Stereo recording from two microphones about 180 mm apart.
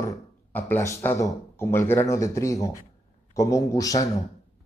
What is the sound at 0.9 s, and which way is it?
Speech, 15° left (ahead or behind).